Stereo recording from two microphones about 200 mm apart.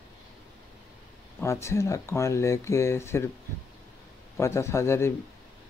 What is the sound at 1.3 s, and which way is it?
Speech, 15° left (ahead or behind).